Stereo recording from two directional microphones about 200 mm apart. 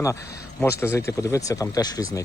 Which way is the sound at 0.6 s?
10° left (ahead or behind).